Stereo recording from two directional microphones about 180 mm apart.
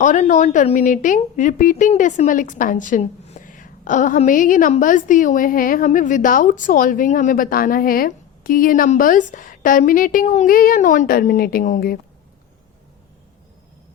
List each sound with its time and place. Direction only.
0.0 s a woman's voice: 45° left (ahead or behind)